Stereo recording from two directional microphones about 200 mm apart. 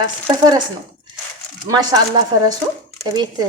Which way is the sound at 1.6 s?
20° right (ahead or behind).